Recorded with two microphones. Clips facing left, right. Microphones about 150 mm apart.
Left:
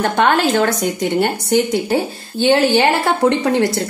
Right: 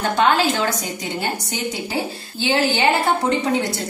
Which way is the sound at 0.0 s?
55° left (ahead or behind).